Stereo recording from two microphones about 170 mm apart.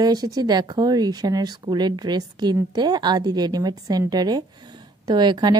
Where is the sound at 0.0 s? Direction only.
20° right (ahead or behind).